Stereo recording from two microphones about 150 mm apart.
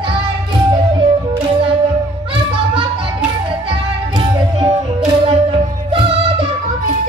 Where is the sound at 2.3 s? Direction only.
35° right (ahead or behind).